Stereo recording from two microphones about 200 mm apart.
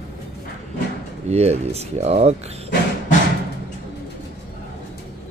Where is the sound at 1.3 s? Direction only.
30° right (ahead or behind).